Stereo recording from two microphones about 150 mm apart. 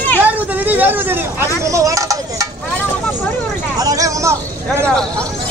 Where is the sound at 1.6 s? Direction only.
20° right (ahead or behind).